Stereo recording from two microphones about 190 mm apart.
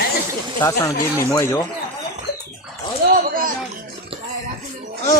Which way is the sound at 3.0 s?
55° right (ahead or behind).